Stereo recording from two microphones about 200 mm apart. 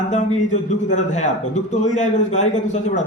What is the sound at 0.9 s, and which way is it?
A man's voice, 35° left (ahead or behind).